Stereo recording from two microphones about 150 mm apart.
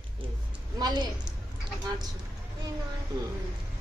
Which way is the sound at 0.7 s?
25° right (ahead or behind).